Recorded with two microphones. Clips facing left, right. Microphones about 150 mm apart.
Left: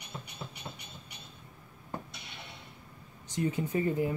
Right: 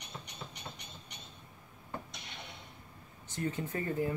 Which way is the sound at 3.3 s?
15° left (ahead or behind).